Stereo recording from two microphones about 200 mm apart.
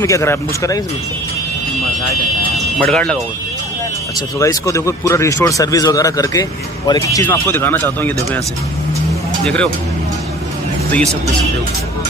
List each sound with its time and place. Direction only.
0.0 s speech: 15° left (ahead or behind)
2.8 s speech: 5° left (ahead or behind)
4.4 s speech: 15° left (ahead or behind)
9.4 s speech: 5° left (ahead or behind)